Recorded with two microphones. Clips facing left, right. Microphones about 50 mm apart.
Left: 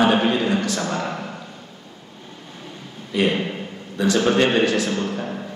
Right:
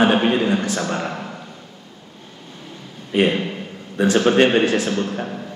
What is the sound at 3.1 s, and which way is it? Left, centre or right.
A man's voice, right.